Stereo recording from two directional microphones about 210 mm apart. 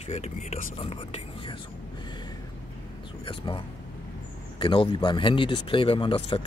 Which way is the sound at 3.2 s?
25° left (ahead or behind).